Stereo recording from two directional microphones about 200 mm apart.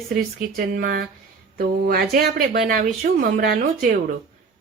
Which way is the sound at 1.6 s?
50° right (ahead or behind).